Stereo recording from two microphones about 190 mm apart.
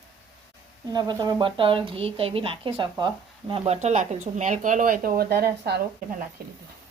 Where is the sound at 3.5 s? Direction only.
35° right (ahead or behind); by 6.5 s 50° right (ahead or behind).